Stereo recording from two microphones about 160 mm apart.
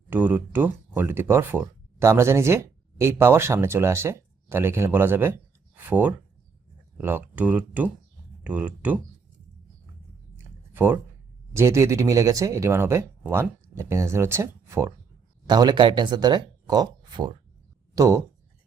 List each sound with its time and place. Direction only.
0.1 s speech: 10° right (ahead or behind)
10.3 s a sound: 10° right (ahead or behind)
11.5 s speech: 15° right (ahead or behind)